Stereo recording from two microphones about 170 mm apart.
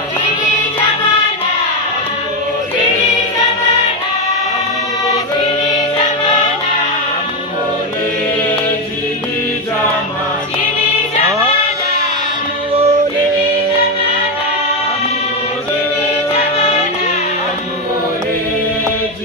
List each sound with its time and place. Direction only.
12.7 s music: 40° right (ahead or behind)